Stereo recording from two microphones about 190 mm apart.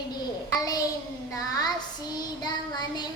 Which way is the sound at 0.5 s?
20° left (ahead or behind).